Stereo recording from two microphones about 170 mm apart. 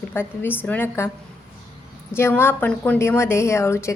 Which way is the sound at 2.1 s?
15° left (ahead or behind).